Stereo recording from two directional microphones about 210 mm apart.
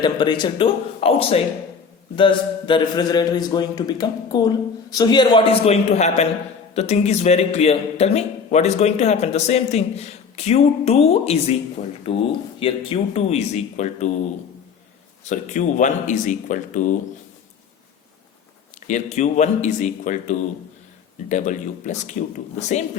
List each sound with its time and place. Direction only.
0.0 s a man's voice: 20° left (ahead or behind)
15.3 s a man's voice: 35° left (ahead or behind)
18.9 s a man's voice: 35° left (ahead or behind)